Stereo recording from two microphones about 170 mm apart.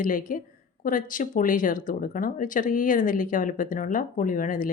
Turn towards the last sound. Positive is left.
turn(degrees=55)  # may be behind; listen again after turning